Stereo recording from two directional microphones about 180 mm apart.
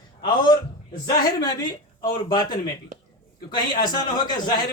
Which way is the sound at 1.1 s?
20° left (ahead or behind).